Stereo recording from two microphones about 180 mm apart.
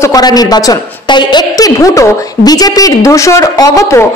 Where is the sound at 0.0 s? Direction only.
20° left (ahead or behind).